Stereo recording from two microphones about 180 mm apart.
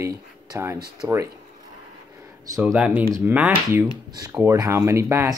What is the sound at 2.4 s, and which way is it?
Speech, 20° right (ahead or behind).